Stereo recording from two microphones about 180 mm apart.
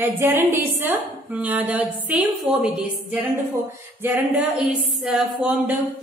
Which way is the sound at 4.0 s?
10° right (ahead or behind).